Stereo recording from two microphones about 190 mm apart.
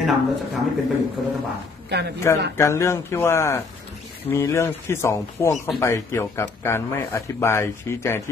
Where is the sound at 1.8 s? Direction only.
60° right (ahead or behind).